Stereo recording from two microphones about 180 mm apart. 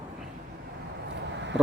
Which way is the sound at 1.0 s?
80° right.